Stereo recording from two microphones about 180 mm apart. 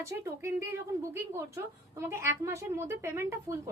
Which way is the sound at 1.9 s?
15° right (ahead or behind).